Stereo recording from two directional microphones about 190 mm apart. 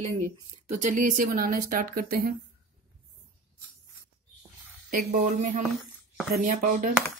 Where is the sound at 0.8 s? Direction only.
40° right (ahead or behind).